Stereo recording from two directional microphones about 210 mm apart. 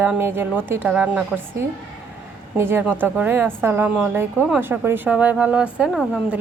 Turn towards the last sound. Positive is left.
turn(degrees=-5)  # may be behind; listen again after turning